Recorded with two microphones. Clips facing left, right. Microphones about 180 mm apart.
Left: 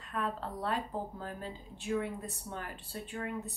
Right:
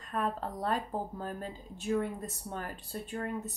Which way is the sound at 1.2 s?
45° right (ahead or behind).